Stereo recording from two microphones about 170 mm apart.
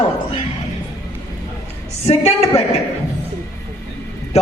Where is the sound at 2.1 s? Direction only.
35° left (ahead or behind).